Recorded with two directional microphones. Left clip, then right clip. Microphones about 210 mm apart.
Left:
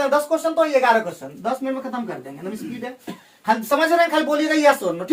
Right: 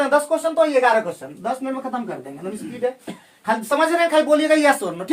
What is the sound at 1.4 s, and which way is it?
Speech, 10° right (ahead or behind).